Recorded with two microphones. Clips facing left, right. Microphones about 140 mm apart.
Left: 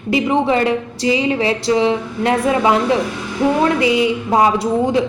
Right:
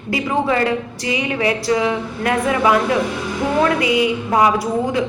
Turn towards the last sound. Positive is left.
turn(degrees=25)  # may be behind; listen again after turning